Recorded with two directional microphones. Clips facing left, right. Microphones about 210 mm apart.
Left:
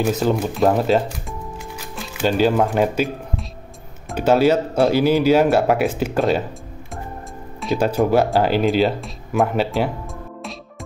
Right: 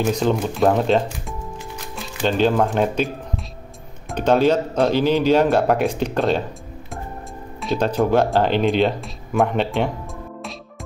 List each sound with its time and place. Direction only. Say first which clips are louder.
0.0 s speech: left 1 dB; 5° left (ahead or behind)
1.8 s music: left 2 dB; 5° left (ahead or behind)
4.1 s speech: left 1 dB; 5° left (ahead or behind)
7.6 s speech: left 1 dB; 10° left (ahead or behind)